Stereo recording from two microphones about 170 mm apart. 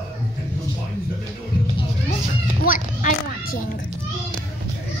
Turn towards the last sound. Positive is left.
turn(degrees=50)  # may be behind; listen again after turning